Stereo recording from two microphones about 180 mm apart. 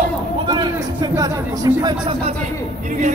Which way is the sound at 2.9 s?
45° right (ahead or behind).